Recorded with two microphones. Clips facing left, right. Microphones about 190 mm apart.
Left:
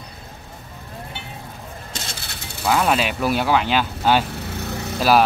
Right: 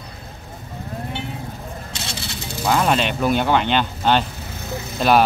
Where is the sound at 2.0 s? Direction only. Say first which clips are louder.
Right 2 dB; 50° left (ahead or behind).